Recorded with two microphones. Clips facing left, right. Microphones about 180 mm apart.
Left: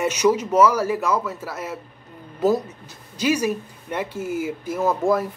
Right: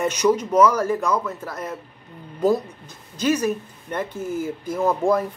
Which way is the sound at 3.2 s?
10° left (ahead or behind).